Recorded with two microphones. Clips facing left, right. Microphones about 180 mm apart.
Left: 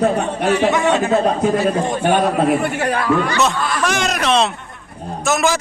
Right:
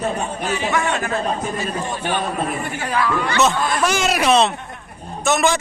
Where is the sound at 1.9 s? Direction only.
50° left (ahead or behind).